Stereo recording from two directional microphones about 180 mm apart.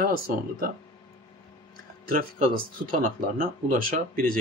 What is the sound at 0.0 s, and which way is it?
Speech, 55° right (ahead or behind).